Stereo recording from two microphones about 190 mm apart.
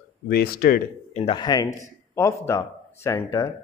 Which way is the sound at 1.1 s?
30° left (ahead or behind).